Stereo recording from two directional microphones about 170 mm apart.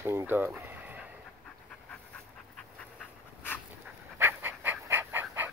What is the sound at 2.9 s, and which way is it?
Dog, 10° left (ahead or behind).